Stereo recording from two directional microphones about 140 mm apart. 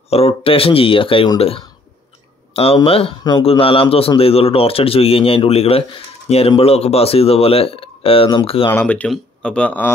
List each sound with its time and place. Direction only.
0.1 s speech: 45° left (ahead or behind)
2.5 s speech: 45° left (ahead or behind)
8.6 s speech: 15° left (ahead or behind)